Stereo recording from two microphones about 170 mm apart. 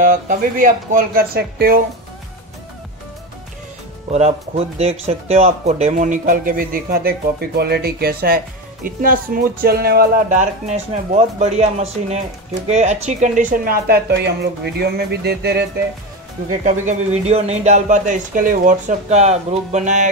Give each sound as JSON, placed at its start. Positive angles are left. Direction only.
{"t": 0.0, "sound": "speech", "side_deg": -55}
{"t": 4.1, "sound": "speech", "side_deg": -40}
{"t": 16.6, "sound": "speech", "side_deg": -45}